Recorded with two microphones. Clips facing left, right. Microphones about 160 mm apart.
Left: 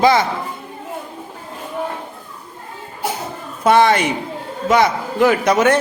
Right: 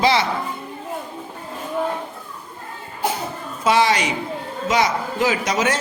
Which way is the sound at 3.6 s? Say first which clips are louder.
Left 5 dB; 55° left (ahead or behind).